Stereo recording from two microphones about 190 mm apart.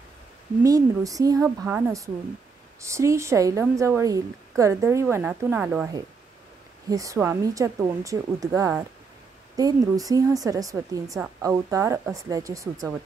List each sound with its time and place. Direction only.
0.7 s a woman's voice: 20° right (ahead or behind)
6.9 s a woman's voice: 15° right (ahead or behind)